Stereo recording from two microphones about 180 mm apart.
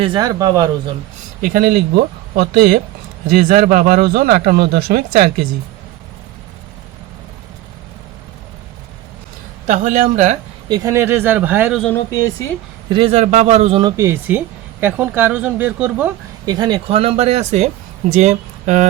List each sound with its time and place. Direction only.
0.0 s speech: 25° right (ahead or behind)
1.4 s speech: 55° right (ahead or behind)
9.6 s a man's voice: 45° right (ahead or behind)
10.7 s speech: 20° right (ahead or behind)
11.8 s speech: 10° left (ahead or behind)
12.9 s speech: 35° right (ahead or behind)
13.8 s speech: 15° right (ahead or behind)
16.6 s speech: 25° right (ahead or behind); by 18.9 s 45° right (ahead or behind)